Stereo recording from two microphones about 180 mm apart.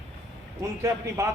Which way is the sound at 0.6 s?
15° right (ahead or behind).